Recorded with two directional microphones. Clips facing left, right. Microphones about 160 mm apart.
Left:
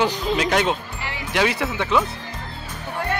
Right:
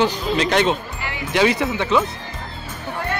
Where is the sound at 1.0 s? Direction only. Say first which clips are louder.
Right 2 dB; 30° left (ahead or behind).